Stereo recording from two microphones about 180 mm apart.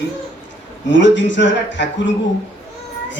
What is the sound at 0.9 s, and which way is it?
Speech, 85° left.